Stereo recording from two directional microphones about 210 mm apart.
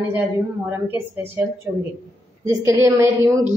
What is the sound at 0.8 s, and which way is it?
Speech, 10° right (ahead or behind).